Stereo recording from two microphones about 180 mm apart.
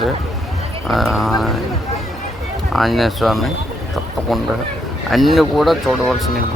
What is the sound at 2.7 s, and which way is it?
Speech, centre (ahead or behind).